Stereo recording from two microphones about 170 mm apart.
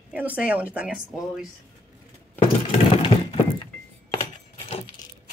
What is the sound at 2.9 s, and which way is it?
Thunk, 30° left (ahead or behind).